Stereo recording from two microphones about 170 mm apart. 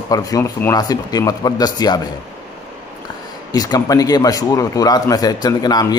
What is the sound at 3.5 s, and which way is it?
Speech, 20° left (ahead or behind).